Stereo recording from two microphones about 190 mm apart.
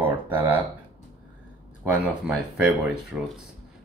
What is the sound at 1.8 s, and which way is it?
Speech, 5° right (ahead or behind).